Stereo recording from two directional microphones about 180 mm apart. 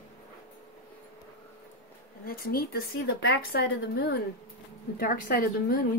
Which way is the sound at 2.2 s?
55° left (ahead or behind).